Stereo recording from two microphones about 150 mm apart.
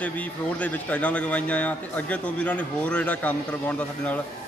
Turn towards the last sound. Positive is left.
turn(degrees=10)  # may be behind; listen again after turning